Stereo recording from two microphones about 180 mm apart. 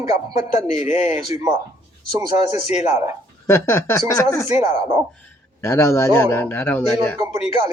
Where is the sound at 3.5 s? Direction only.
15° left (ahead or behind).